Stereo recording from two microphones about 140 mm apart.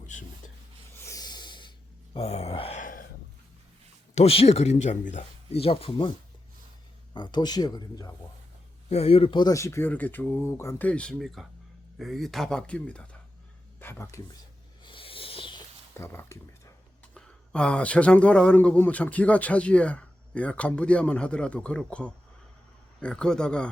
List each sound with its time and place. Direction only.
0.9 s snort: 20° left (ahead or behind)
2.1 s groan: 45° left (ahead or behind)
2.8 s a sound: 75° left (ahead or behind)
4.1 s speech: 45° left (ahead or behind)
5.5 s speech: 45° left (ahead or behind)
7.1 s speech: 30° left (ahead or behind)
8.9 s speech: 45° left (ahead or behind)
9.5 s speech: 20° left (ahead or behind)
14.8 s a sound: 40° left (ahead or behind)
16.0 s speech: 20° left (ahead or behind)
17.2 s speech: 5° left (ahead or behind)